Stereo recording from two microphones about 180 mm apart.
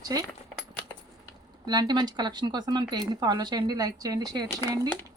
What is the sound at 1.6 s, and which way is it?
Speech, 20° right (ahead or behind).